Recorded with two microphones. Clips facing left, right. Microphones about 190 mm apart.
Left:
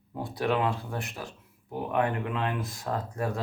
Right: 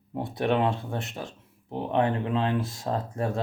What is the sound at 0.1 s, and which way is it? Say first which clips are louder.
Speech: right 2 dB; 25° right (ahead or behind).